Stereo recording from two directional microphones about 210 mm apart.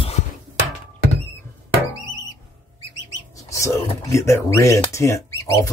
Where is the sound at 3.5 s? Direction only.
15° left (ahead or behind).